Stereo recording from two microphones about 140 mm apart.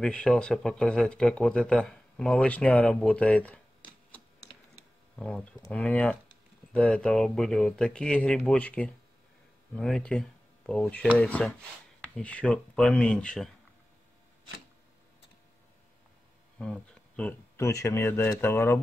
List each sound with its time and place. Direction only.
0.0 s speech: 5° left (ahead or behind)
5.2 s speech: 10° left (ahead or behind)
16.5 s speech: 5° left (ahead or behind)